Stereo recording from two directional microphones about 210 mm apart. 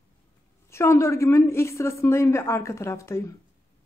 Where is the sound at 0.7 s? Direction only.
15° left (ahead or behind).